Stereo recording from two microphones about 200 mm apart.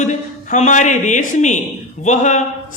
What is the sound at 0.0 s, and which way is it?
A man's voice, 35° left (ahead or behind).